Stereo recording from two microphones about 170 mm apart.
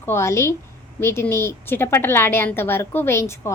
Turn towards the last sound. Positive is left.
turn(degrees=15)  # may be behind; listen again after turning